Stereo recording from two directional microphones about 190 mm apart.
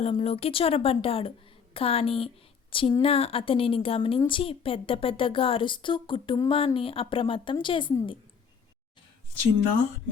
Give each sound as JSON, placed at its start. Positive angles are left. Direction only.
{"t": 0.0, "sound": "speech", "side_deg": 30}